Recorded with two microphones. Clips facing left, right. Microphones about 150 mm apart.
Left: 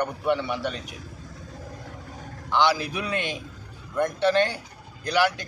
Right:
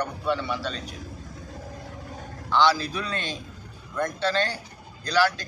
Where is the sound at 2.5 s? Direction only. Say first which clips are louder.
Right 1 dB; 15° left (ahead or behind).